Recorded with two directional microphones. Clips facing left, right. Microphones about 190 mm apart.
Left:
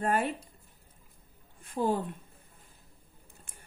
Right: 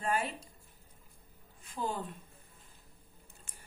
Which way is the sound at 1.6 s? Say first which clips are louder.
Left 8 dB; 55° left (ahead or behind).